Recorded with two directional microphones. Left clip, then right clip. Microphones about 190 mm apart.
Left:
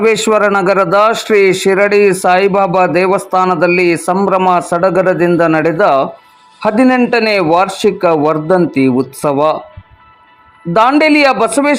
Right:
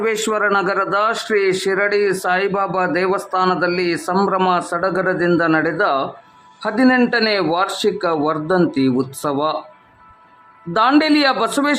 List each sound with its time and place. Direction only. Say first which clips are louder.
0.0 s a man's voice: left 8 dB; 25° left (ahead or behind)
4.1 s speech: left 2 dB; 5° left (ahead or behind)
4.5 s a man's voice: left 8 dB; 20° left (ahead or behind)
10.8 s speech: left 6 dB; 15° left (ahead or behind)